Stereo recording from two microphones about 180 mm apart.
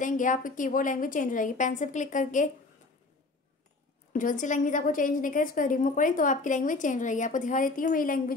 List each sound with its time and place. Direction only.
0.0 s a woman's voice: 45° left (ahead or behind)
4.1 s a woman's voice: 45° left (ahead or behind)